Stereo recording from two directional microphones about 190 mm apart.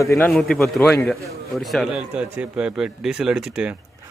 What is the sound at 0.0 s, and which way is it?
Speech, 15° left (ahead or behind).